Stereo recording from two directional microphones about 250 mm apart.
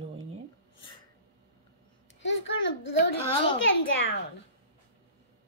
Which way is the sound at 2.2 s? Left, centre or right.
Left.